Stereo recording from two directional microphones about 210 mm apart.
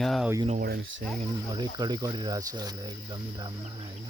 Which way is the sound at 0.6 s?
45° right (ahead or behind).